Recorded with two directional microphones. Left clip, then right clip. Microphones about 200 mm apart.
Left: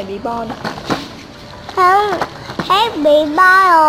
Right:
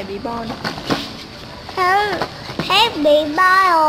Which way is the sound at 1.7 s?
10° left (ahead or behind).